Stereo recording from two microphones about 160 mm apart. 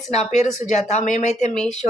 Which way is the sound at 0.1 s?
45° left (ahead or behind).